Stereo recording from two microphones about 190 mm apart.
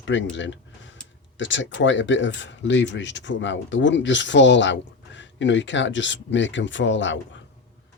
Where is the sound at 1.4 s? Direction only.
75° left (ahead or behind).